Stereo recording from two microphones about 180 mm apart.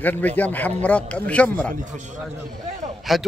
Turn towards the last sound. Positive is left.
turn(degrees=0)  # may be behind; listen again after turning